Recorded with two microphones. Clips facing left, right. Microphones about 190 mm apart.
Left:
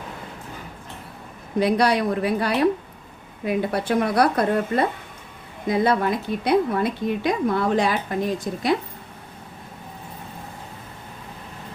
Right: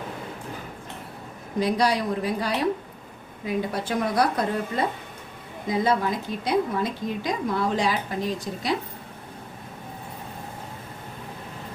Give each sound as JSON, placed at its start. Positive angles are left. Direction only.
{"t": 1.5, "sound": "a woman's voice", "side_deg": 60}